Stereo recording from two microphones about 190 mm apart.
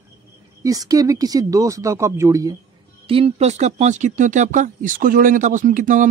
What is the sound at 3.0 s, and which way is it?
Speech, 30° right (ahead or behind).